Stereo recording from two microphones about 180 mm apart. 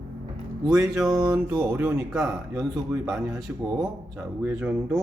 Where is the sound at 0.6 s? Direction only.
15° right (ahead or behind).